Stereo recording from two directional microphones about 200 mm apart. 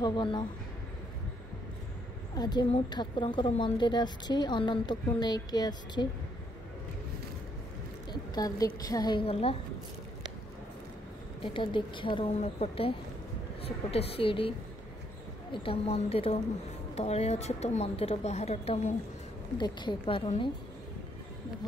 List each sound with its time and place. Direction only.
0.0 s a woman's voice: 25° left (ahead or behind)
2.3 s a woman's voice: 20° left (ahead or behind)
8.1 s a woman's voice: 20° left (ahead or behind)
11.4 s a woman's voice: 25° left (ahead or behind)
15.5 s a woman's voice: 25° left (ahead or behind)